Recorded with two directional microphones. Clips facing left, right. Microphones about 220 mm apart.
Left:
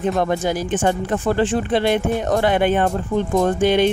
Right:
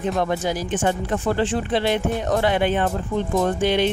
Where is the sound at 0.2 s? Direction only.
50° left (ahead or behind).